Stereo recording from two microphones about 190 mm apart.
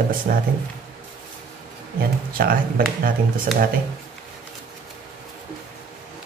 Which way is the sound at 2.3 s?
50° right (ahead or behind).